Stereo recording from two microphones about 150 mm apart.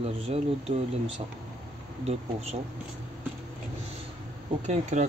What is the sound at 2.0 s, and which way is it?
Speech, 45° right (ahead or behind).